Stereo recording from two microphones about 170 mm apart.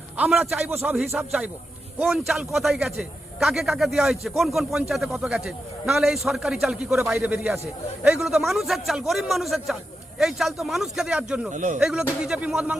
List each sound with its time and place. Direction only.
0.2 s a man's voice: 10° right (ahead or behind)
11.5 s speech: 45° right (ahead or behind)
11.8 s a man's voice: 5° right (ahead or behind)